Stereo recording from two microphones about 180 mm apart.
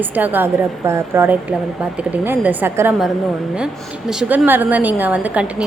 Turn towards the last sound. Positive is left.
turn(degrees=-5)  # may be behind; listen again after turning